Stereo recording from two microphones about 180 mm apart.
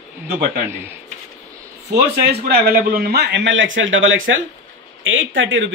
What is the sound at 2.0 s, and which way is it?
A man's voice, 60° right (ahead or behind).